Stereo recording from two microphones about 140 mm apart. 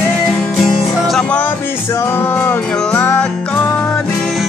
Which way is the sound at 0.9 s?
Centre (ahead or behind).